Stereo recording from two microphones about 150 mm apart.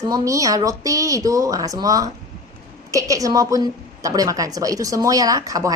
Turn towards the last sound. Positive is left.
turn(degrees=-25)  # may be behind; listen again after turning